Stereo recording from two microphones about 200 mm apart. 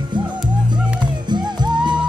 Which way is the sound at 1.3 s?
20° right (ahead or behind).